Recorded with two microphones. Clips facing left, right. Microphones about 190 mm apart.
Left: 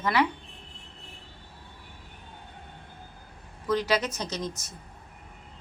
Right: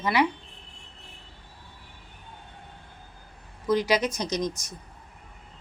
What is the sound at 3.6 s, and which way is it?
A woman's voice, 15° right (ahead or behind).